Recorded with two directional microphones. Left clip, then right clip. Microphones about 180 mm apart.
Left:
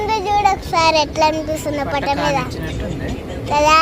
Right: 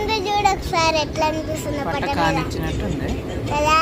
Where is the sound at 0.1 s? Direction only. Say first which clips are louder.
Left 4 dB; 5° right (ahead or behind).